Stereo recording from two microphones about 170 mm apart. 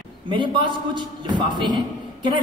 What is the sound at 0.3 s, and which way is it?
A man's voice, 30° right (ahead or behind).